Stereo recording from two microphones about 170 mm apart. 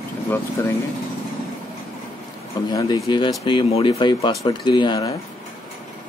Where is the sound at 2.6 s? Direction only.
20° left (ahead or behind).